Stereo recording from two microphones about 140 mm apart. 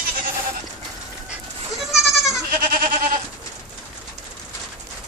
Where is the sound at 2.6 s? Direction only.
90° right.